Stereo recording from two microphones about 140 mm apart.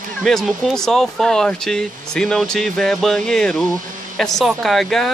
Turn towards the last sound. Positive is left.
turn(degrees=0)  # may be behind; listen again after turning